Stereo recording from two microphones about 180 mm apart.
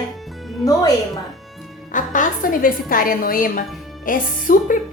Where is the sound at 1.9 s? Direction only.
45° left (ahead or behind).